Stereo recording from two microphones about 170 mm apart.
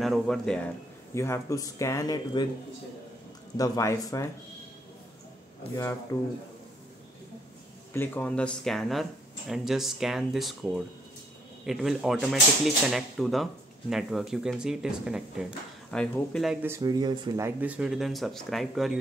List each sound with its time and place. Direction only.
0.0 s speech: centre (ahead or behind)
1.1 s speech: 15° left (ahead or behind)
3.5 s speech: 20° left (ahead or behind)
7.9 s speech: 10° left (ahead or behind)
16.6 s speech: 20° right (ahead or behind); by 18.9 s centre (ahead or behind)